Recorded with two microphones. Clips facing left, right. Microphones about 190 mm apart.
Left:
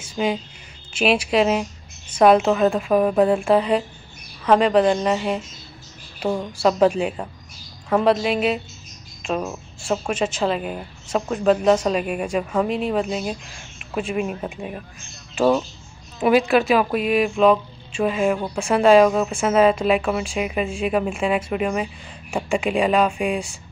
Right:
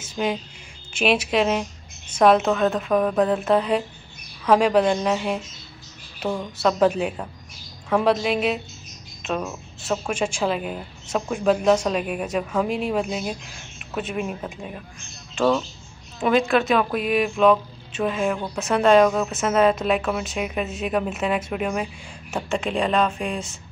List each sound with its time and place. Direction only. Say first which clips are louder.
0.1 s a woman's voice: left 2 dB; 5° left (ahead or behind)
6.1 s a sound: left 3 dB; 10° left (ahead or behind)
6.9 s a woman's voice: left 2 dB; 5° right (ahead or behind)
9.4 s a woman's voice: left 2 dB; 20° left (ahead or behind)
10.2 s a woman's voice: left 2 dB; centre (ahead or behind)
16.2 s a woman's voice: left 3 dB; 5° left (ahead or behind)
22.3 s speech: left 3 dB; 15° left (ahead or behind)